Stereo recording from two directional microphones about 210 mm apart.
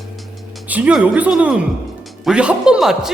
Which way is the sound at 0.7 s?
5° right (ahead or behind).